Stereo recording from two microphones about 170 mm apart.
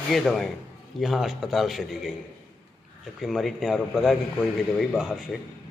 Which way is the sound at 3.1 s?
Centre (ahead or behind).